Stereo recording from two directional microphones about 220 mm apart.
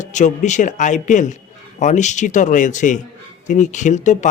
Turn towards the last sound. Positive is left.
turn(degrees=35)  # may be behind; listen again after turning